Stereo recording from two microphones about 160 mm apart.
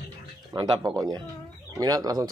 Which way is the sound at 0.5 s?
30° right (ahead or behind).